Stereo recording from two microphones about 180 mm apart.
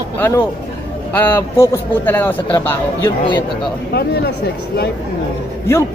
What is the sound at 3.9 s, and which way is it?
Speech, 60° left (ahead or behind).